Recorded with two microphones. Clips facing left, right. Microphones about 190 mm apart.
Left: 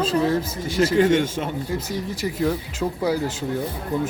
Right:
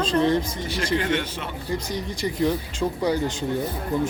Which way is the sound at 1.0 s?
45° left (ahead or behind).